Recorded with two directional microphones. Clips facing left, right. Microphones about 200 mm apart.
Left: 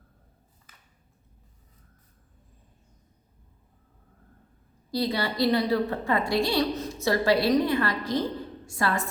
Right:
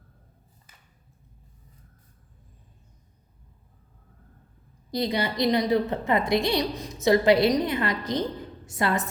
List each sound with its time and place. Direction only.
4.9 s a woman's voice: 20° right (ahead or behind)